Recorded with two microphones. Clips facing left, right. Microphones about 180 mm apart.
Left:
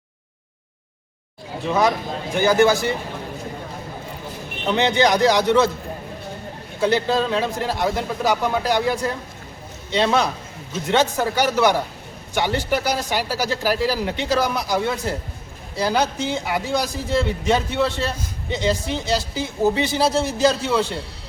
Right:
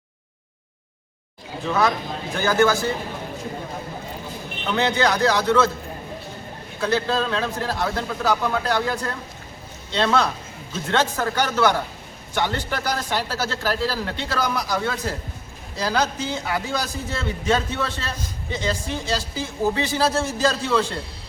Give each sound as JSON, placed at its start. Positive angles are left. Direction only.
{"t": 1.6, "sound": "speech", "side_deg": 15}
{"t": 4.6, "sound": "a man's voice", "side_deg": 20}
{"t": 6.8, "sound": "speech", "side_deg": 15}